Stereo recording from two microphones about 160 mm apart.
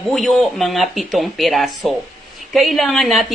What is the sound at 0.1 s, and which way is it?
A woman's voice, centre (ahead or behind).